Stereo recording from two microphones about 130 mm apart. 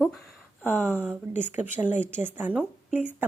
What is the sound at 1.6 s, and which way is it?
A woman's voice, 15° right (ahead or behind).